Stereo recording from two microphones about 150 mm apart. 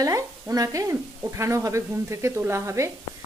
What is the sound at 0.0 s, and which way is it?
Speech, 25° right (ahead or behind).